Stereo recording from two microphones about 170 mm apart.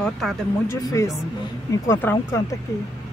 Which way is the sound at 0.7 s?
20° left (ahead or behind).